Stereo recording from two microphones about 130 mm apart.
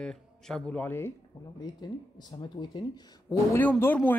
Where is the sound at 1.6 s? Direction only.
30° left (ahead or behind).